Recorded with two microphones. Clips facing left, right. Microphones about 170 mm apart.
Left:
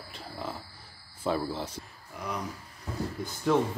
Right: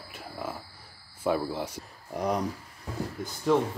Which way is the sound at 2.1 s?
40° right (ahead or behind).